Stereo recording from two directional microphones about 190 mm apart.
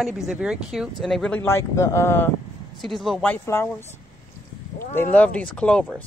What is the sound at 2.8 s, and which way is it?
Speech, centre (ahead or behind).